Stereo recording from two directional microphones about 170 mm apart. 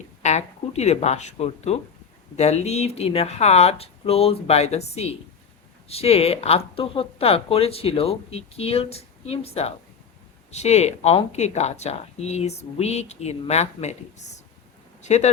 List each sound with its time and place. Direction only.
0.2 s speech: 45° left (ahead or behind)